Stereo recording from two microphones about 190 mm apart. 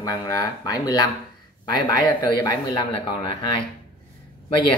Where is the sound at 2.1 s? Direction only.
20° left (ahead or behind).